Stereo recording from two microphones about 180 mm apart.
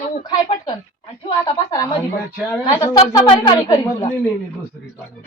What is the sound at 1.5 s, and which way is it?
A woman's voice, 25° left (ahead or behind).